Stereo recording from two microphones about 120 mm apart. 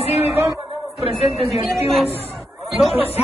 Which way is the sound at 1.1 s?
Centre (ahead or behind).